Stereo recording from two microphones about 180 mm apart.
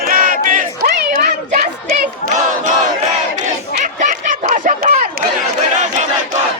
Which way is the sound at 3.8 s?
45° right (ahead or behind).